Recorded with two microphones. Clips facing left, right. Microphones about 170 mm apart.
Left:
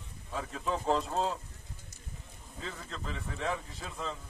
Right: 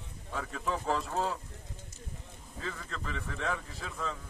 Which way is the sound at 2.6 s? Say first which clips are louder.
Right 1 dB; 30° left (ahead or behind).